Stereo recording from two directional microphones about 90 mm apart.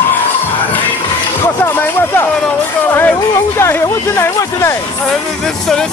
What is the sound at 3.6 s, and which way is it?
Speech, 30° left (ahead or behind).